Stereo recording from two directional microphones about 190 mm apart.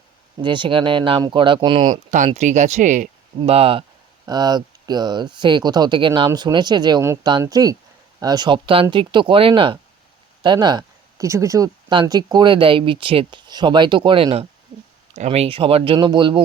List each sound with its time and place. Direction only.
0.4 s speech: 25° right (ahead or behind)
1.9 s speech: 40° right (ahead or behind); by 16.4 s 25° right (ahead or behind)